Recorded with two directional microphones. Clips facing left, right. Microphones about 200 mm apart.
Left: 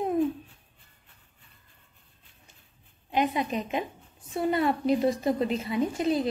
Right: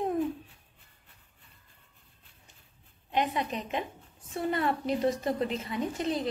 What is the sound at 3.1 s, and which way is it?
A woman's voice, 10° left (ahead or behind).